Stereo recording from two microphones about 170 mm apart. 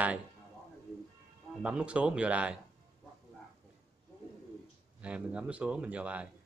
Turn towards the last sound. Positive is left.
turn(degrees=-5)  # may be behind; listen again after turning